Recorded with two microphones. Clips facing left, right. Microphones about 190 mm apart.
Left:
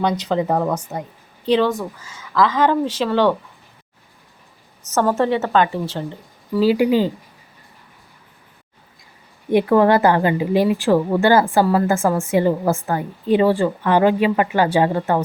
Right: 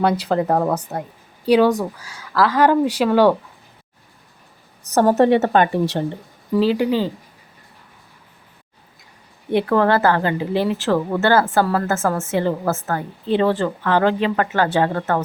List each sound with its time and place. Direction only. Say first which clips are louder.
0.0 s speech: right 1 dB; 5° right (ahead or behind)
1.5 s speech: right 3 dB; 10° right (ahead or behind)
5.1 s a woman's voice: right 3 dB; 55° right (ahead or behind)
6.0 s speech: right 4 dB; 20° right (ahead or behind)
6.6 s a woman's voice: left 2 dB; 10° left (ahead or behind)
9.5 s a woman's voice: left 3 dB; 15° left (ahead or behind)